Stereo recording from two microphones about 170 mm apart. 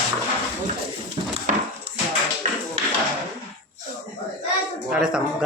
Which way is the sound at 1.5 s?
50° right (ahead or behind).